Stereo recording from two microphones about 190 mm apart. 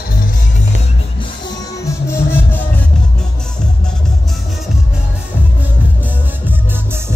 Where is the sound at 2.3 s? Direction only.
10° left (ahead or behind).